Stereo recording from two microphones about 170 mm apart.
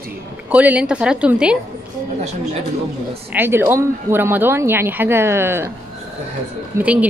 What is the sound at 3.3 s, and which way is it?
A woman's voice, 10° right (ahead or behind).